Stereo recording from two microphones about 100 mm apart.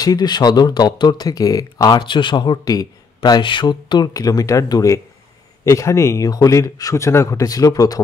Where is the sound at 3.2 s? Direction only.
50° left (ahead or behind).